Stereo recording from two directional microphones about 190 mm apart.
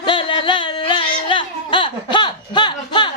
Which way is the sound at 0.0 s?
25° left (ahead or behind).